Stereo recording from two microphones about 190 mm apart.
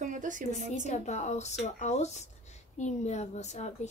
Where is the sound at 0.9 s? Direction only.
35° left (ahead or behind).